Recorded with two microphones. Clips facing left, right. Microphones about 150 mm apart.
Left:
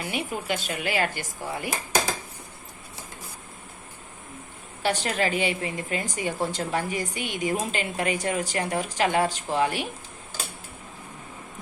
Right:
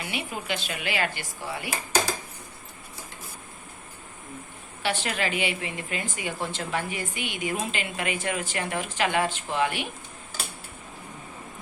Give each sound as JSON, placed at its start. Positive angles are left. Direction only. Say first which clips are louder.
{"t": 0.0, "sound": "a sound", "louder": "left 3 dB", "side_deg": 45}
{"t": 0.4, "sound": "speech", "louder": "left 3 dB", "side_deg": 45}
{"t": 4.8, "sound": "a woman's voice", "louder": "left 3 dB", "side_deg": 40}